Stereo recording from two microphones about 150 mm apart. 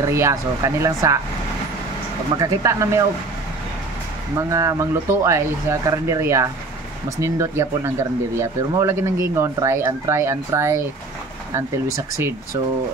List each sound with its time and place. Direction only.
0.1 s speech: 20° right (ahead or behind)
2.3 s speech: 20° right (ahead or behind)
4.4 s speech: 20° right (ahead or behind)